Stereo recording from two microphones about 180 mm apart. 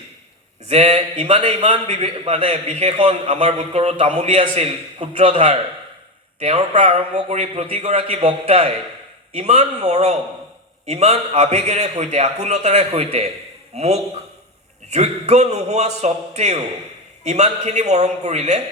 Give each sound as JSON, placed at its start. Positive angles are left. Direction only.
{"t": 0.7, "sound": "a man's voice", "side_deg": -35}